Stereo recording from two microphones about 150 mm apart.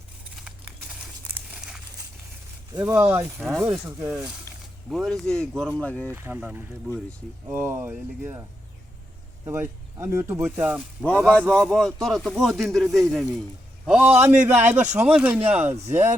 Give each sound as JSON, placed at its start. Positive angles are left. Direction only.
{"t": 0.3, "sound": "crumpling", "side_deg": -5}
{"t": 2.8, "sound": "speech", "side_deg": -15}
{"t": 3.3, "sound": "speech", "side_deg": 0}
{"t": 3.8, "sound": "speech", "side_deg": -15}
{"t": 4.9, "sound": "speech", "side_deg": 0}
{"t": 6.1, "sound": "speech", "side_deg": -15}
{"t": 9.5, "sound": "speech", "side_deg": -15}
{"t": 11.3, "sound": "speech", "side_deg": 5}
{"t": 14.5, "sound": "speech", "side_deg": -50}
{"t": 14.9, "sound": "speech", "side_deg": -10}